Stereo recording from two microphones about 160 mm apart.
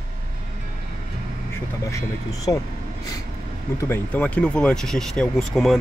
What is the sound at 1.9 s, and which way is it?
Speech, 20° left (ahead or behind).